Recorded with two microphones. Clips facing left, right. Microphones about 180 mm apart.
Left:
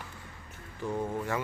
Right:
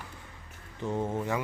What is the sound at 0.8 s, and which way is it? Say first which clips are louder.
Speech: right 1 dB; 20° right (ahead or behind).